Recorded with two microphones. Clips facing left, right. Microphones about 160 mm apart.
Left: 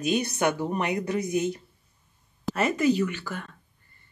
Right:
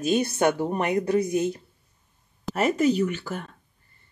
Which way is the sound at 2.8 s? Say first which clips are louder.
Right 1 dB; 40° right (ahead or behind).